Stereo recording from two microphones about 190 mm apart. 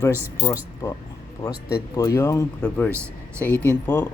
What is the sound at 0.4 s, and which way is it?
Speech, 15° left (ahead or behind).